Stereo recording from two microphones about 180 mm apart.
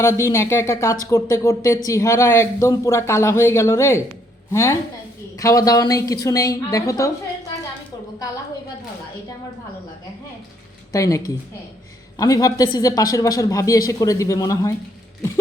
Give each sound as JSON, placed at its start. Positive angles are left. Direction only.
{"t": 0.0, "sound": "speech", "side_deg": 15}
{"t": 10.9, "sound": "speech", "side_deg": 15}